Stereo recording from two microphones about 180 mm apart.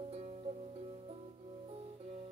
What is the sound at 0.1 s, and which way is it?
Music, 35° right (ahead or behind).